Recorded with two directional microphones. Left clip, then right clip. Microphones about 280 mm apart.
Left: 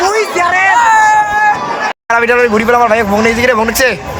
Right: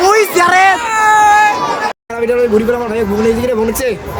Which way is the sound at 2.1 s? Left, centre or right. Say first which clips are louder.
Left 4 dB; centre.